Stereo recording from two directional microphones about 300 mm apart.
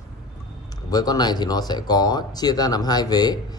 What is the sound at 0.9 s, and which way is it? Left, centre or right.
Speech, centre.